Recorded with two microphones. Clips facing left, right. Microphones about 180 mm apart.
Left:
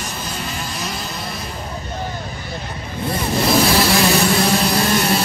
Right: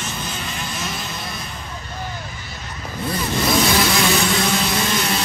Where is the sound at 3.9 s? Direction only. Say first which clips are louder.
Left 3 dB; 35° left (ahead or behind).